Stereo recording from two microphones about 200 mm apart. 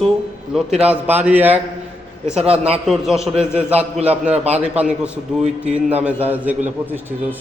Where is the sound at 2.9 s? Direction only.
Centre (ahead or behind).